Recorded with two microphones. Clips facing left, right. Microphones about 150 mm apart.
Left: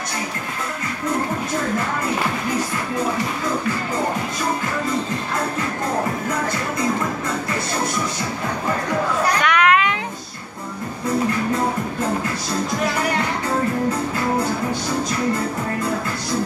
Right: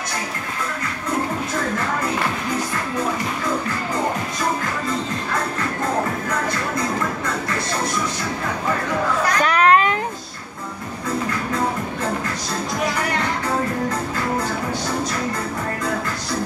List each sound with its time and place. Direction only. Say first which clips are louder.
9.4 s children playing: right 3 dB; 35° right (ahead or behind)